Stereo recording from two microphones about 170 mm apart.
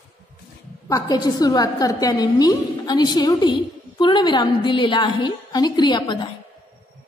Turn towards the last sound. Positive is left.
turn(degrees=25)  # may be behind; listen again after turning